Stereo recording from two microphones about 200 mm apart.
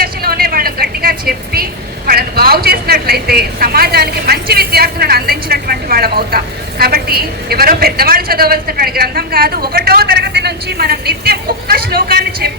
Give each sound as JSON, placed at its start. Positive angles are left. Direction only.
{"t": 0.0, "sound": "vehicle", "side_deg": -50}